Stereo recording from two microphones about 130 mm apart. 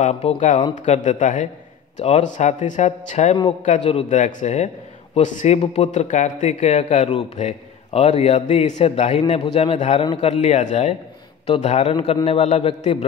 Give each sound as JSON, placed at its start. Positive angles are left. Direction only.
{"t": 0.0, "sound": "a man's voice", "side_deg": 55}
{"t": 5.6, "sound": "a man's voice", "side_deg": 55}
{"t": 7.3, "sound": "a sound", "side_deg": 55}
{"t": 8.1, "sound": "a man's voice", "side_deg": 60}